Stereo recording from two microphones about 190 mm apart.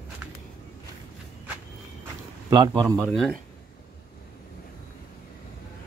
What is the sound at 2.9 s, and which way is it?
Speech, centre (ahead or behind).